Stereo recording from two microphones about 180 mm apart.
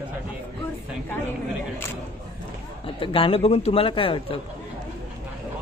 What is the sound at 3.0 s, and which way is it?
Speech, 30° left (ahead or behind).